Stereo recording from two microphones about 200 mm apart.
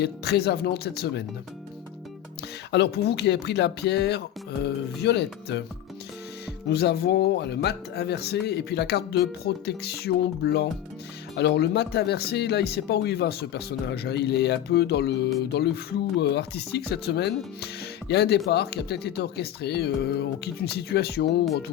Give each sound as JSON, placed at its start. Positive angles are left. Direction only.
{"t": 0.0, "sound": "speech", "side_deg": 55}
{"t": 2.7, "sound": "speech", "side_deg": 55}
{"t": 6.7, "sound": "speech", "side_deg": 55}